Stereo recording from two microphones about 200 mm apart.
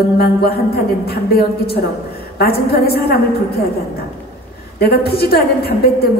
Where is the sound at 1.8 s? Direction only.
50° left (ahead or behind).